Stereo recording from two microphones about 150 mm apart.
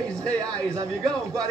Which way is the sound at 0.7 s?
25° right (ahead or behind).